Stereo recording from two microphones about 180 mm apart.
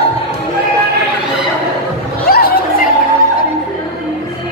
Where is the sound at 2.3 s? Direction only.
55° left (ahead or behind).